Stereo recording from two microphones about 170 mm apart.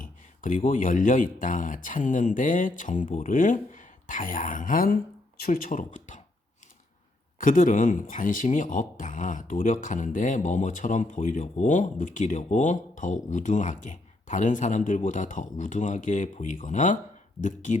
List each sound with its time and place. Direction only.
0.0 s speech: 55° left (ahead or behind)
7.3 s speech: 55° left (ahead or behind)